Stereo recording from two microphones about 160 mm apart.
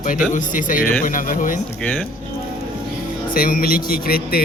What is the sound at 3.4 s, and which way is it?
Speech, 65° left (ahead or behind).